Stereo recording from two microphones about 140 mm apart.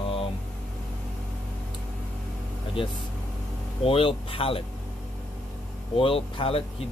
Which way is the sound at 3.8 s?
40° left (ahead or behind).